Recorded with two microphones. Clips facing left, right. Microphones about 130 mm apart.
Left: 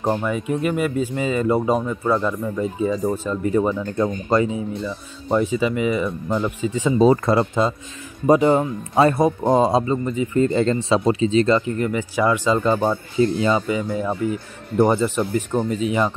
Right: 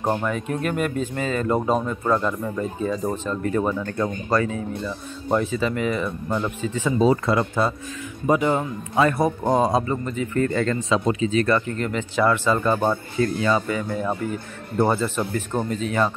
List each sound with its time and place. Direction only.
0.0 s speech: 5° left (ahead or behind)
7.0 s speech: 40° left (ahead or behind)
9.1 s speech: 20° left (ahead or behind)
13.6 s speech: 10° left (ahead or behind)